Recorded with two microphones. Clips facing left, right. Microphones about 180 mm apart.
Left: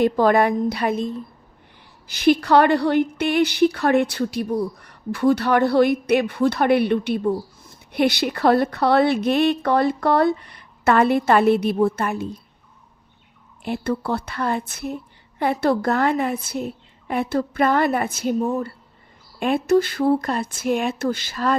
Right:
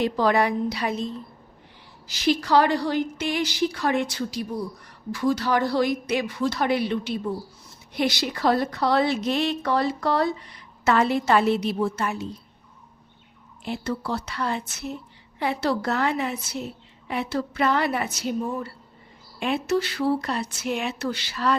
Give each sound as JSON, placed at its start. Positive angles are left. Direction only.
{"t": 0.0, "sound": "a woman's voice", "side_deg": 50}
{"t": 13.7, "sound": "a woman's voice", "side_deg": 55}